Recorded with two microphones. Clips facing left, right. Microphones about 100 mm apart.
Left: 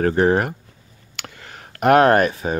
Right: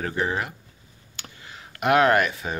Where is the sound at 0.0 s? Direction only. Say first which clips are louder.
Left 10 dB; 50° left (ahead or behind).